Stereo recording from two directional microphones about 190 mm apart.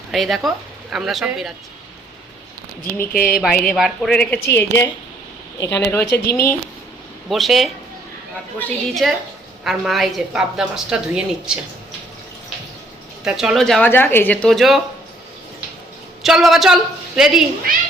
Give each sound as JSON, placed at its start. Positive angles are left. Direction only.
{"t": 0.1, "sound": "a woman's voice", "side_deg": 0}
{"t": 3.1, "sound": "speech", "side_deg": 50}
{"t": 3.6, "sound": "a woman's voice", "side_deg": 5}
{"t": 7.3, "sound": "a woman's voice", "side_deg": 0}
{"t": 13.2, "sound": "a woman's voice", "side_deg": 0}
{"t": 16.2, "sound": "a woman's voice", "side_deg": 0}